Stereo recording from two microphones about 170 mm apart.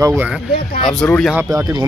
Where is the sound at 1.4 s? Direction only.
20° right (ahead or behind).